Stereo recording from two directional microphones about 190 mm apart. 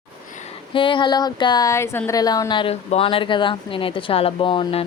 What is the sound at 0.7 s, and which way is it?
Speech, 25° left (ahead or behind).